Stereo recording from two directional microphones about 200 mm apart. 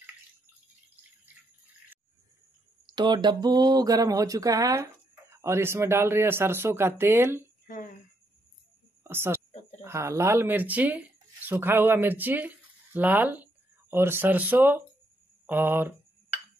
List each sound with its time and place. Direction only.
2.9 s speech: 20° right (ahead or behind)
7.6 s a sound: 45° left (ahead or behind)
9.0 s speech: 10° right (ahead or behind)